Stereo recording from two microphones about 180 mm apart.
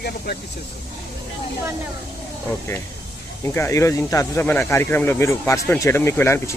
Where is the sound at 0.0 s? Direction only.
60° left (ahead or behind).